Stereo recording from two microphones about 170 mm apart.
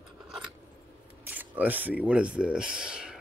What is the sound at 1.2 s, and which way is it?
Speech, 10° right (ahead or behind).